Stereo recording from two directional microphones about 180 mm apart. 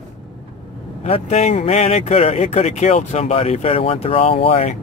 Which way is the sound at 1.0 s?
35° left (ahead or behind).